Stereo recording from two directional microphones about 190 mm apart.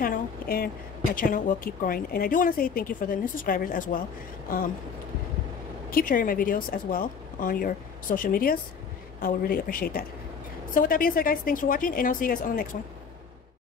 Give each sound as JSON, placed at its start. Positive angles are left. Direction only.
{"t": 0.0, "sound": "a woman's voice", "side_deg": 50}
{"t": 5.9, "sound": "a woman's voice", "side_deg": 45}